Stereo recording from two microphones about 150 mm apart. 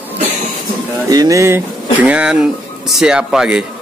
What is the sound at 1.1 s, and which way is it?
Speech, 25° right (ahead or behind).